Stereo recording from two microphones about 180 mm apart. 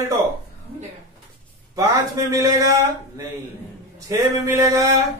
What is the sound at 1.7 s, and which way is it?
A man's voice, 20° right (ahead or behind).